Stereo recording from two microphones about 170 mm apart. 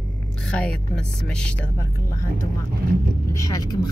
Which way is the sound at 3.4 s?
20° left (ahead or behind).